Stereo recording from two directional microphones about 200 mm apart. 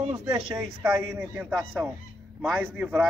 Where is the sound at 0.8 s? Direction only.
10° right (ahead or behind).